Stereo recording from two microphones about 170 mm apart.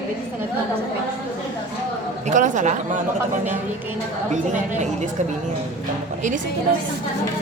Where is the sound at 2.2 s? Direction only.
45° right (ahead or behind).